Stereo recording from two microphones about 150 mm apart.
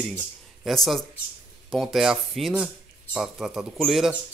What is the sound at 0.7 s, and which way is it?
Speech, centre (ahead or behind).